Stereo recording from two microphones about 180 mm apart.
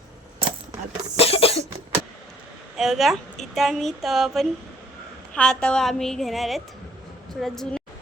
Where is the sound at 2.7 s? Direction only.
Centre (ahead or behind).